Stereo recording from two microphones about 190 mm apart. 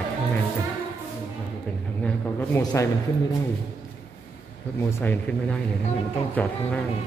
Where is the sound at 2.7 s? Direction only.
15° left (ahead or behind).